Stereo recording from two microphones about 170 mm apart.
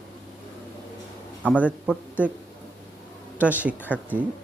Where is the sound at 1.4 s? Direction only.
10° right (ahead or behind).